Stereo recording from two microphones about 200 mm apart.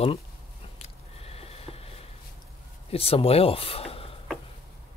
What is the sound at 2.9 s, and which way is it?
Speech, 30° left (ahead or behind).